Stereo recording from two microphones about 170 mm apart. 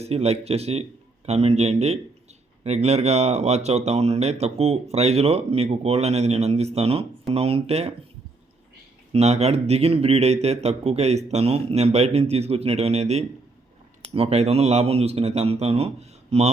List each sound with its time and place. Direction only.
0.0 s speech: 40° right (ahead or behind)
9.1 s speech: 40° right (ahead or behind)